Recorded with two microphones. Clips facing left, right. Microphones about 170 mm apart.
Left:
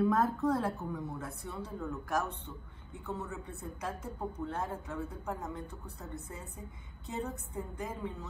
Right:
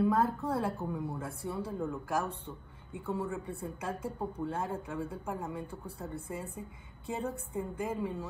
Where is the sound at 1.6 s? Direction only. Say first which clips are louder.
Right 2 dB; 10° right (ahead or behind).